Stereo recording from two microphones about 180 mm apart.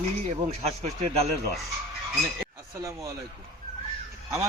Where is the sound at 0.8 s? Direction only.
35° right (ahead or behind).